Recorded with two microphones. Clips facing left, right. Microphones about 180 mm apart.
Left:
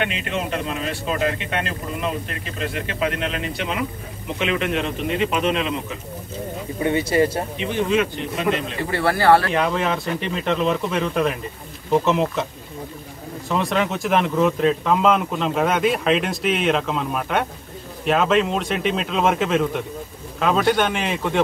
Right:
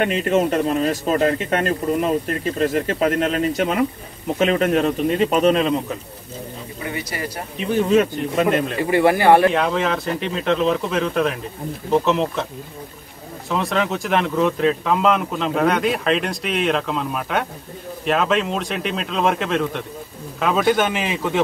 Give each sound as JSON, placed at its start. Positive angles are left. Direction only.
{"t": 0.0, "sound": "speech", "side_deg": -40}
{"t": 6.8, "sound": "speech", "side_deg": 30}
{"t": 7.5, "sound": "speech", "side_deg": -40}
{"t": 8.9, "sound": "speech", "side_deg": -15}
{"t": 9.5, "sound": "speech", "side_deg": 0}
{"t": 13.5, "sound": "speech", "side_deg": 0}